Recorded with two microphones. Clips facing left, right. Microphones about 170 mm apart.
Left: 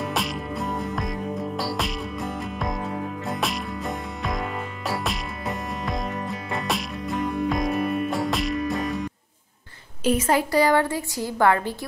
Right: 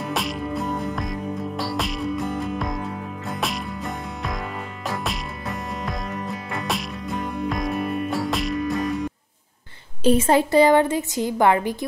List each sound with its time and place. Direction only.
0.0 s music: centre (ahead or behind)
10.0 s a woman's voice: 30° right (ahead or behind)